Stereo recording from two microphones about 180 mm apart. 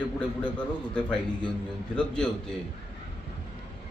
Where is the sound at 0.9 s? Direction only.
5° left (ahead or behind).